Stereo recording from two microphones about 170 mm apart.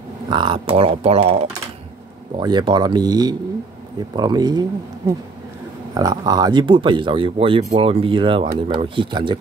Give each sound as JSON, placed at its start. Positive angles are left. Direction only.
{"t": 0.3, "sound": "speech", "side_deg": -25}